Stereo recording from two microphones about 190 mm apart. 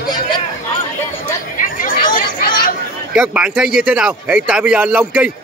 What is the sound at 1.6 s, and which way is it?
Chatter, 45° left (ahead or behind).